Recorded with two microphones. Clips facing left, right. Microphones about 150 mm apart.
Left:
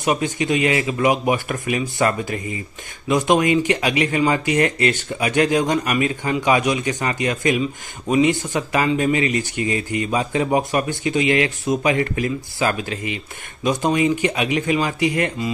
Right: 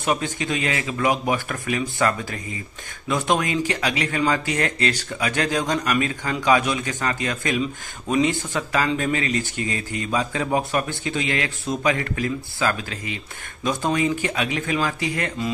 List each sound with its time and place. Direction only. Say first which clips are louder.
0.0 s speech: left 3 dB; 15° left (ahead or behind)